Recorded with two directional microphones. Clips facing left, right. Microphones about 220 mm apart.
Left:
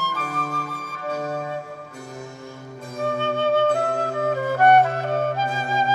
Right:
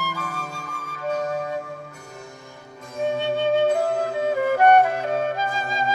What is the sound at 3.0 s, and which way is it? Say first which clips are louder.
Flute: even; 15° right (ahead or behind).